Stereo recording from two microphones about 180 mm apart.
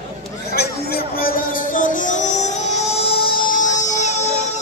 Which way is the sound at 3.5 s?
45° left (ahead or behind).